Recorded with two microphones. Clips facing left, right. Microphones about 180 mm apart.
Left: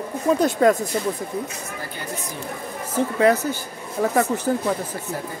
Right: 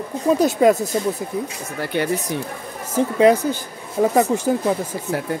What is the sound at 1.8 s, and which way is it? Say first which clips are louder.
Speech: right 14 dB; 70° right (ahead or behind).